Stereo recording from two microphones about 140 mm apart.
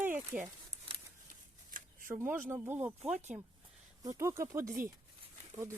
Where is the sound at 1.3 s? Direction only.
75° right (ahead or behind).